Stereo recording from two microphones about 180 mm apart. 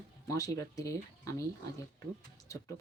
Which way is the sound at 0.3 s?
20° left (ahead or behind).